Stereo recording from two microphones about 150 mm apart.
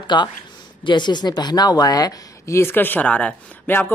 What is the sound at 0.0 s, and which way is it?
A woman's voice, 30° left (ahead or behind).